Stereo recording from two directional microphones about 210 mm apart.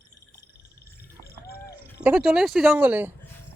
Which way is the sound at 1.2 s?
50° left (ahead or behind).